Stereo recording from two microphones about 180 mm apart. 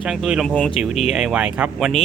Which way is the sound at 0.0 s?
5° right (ahead or behind).